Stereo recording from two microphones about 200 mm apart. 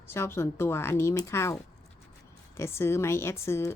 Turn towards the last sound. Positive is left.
turn(degrees=15)  # may be behind; listen again after turning